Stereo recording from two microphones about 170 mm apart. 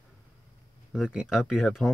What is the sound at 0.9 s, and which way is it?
Speech, 5° right (ahead or behind).